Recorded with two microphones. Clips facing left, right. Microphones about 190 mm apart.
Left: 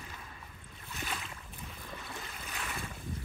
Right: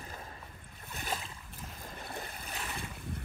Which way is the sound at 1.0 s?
35° right (ahead or behind).